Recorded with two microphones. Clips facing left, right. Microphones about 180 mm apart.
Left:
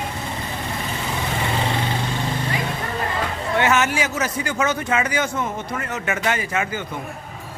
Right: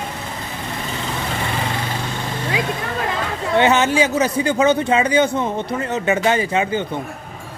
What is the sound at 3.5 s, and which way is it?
Speech, 30° right (ahead or behind).